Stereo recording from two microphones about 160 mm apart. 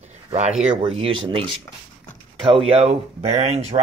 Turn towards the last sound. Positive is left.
turn(degrees=-40)  # may be behind; listen again after turning